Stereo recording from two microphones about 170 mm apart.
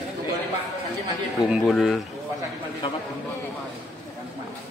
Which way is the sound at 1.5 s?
Centre (ahead or behind).